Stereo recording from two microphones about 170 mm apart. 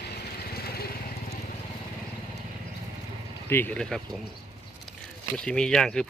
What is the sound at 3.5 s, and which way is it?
Speech, 10° left (ahead or behind).